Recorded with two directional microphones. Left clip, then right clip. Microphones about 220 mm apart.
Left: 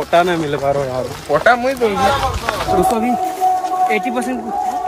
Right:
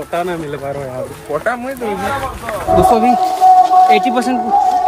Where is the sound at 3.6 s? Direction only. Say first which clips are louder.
Right 7 dB; 20° right (ahead or behind).